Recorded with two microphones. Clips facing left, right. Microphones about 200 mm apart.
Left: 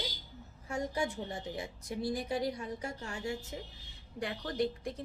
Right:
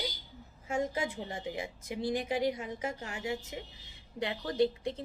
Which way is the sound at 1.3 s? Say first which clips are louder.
Right 2 dB; 90° right.